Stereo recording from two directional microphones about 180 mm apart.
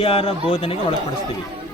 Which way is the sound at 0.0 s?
30° left (ahead or behind).